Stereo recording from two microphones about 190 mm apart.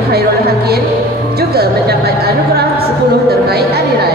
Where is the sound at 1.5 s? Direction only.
55° right (ahead or behind).